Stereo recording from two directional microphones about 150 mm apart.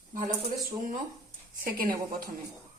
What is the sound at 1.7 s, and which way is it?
Speech, 70° right (ahead or behind).